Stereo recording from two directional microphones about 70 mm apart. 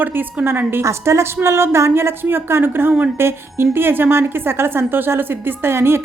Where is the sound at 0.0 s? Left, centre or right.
Right.